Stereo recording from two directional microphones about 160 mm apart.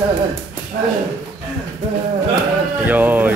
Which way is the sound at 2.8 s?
10° right (ahead or behind).